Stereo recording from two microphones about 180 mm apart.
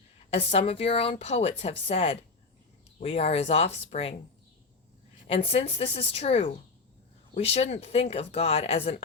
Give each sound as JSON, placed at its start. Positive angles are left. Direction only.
{"t": 0.3, "sound": "speech", "side_deg": 35}
{"t": 5.3, "sound": "speech", "side_deg": 35}